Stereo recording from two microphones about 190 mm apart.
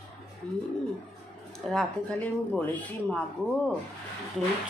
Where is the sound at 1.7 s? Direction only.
5° left (ahead or behind).